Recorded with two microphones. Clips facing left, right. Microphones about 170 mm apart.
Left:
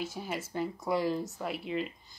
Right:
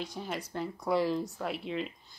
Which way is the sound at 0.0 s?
5° left (ahead or behind).